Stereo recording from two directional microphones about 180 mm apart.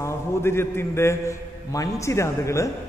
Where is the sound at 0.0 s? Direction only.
15° left (ahead or behind).